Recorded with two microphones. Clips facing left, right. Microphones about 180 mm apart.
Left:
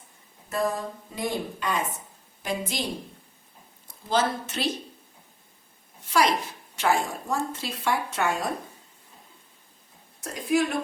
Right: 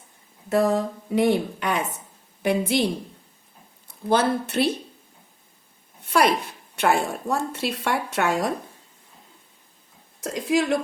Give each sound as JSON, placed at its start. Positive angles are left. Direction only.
{"t": 0.5, "sound": "a sound", "side_deg": -70}
{"t": 2.4, "sound": "a woman's voice", "side_deg": -65}
{"t": 3.8, "sound": "speech", "side_deg": -60}
{"t": 6.1, "sound": "a woman's voice", "side_deg": -60}
{"t": 10.3, "sound": "a woman's voice", "side_deg": -85}